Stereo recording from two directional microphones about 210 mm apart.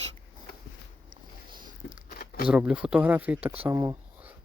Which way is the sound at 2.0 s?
45° left (ahead or behind).